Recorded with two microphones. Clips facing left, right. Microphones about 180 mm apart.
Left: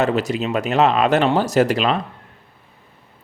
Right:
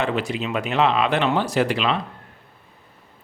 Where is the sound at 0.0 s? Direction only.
40° left (ahead or behind).